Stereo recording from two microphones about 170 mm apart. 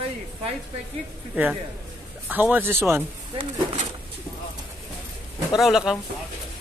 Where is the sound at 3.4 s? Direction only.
35° right (ahead or behind).